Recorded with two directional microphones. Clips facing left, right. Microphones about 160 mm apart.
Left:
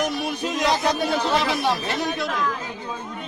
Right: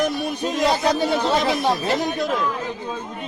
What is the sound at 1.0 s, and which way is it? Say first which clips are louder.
Speech: right 2 dB; 30° right (ahead or behind).